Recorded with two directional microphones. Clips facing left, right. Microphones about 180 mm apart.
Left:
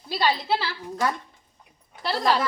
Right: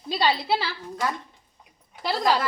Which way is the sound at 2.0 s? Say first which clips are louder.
Even; 15° right (ahead or behind).